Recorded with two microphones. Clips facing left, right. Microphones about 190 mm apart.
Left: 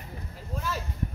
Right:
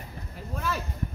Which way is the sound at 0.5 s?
60° right (ahead or behind).